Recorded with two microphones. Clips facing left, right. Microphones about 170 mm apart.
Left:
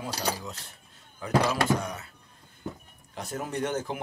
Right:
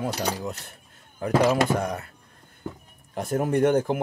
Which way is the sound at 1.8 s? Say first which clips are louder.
Right 7 dB; 55° right (ahead or behind).